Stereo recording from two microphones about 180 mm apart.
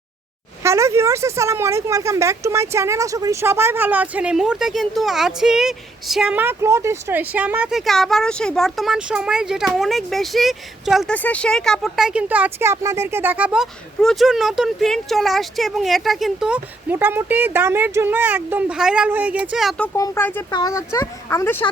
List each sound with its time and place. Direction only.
0.6 s a woman's voice: 15° right (ahead or behind)
20.0 s speech: 10° left (ahead or behind)
20.5 s speech: 20° left (ahead or behind)